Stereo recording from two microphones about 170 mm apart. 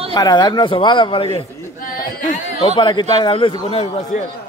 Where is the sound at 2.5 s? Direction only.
30° left (ahead or behind).